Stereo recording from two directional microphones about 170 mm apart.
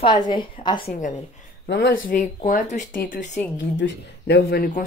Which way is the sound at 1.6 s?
90° left.